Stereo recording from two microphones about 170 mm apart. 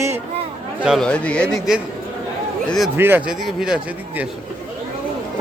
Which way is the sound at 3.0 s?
10° right (ahead or behind).